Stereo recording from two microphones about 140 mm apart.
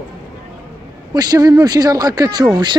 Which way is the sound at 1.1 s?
30° right (ahead or behind).